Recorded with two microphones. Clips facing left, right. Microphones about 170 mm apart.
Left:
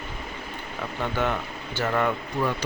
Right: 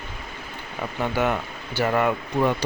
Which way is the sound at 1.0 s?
10° right (ahead or behind).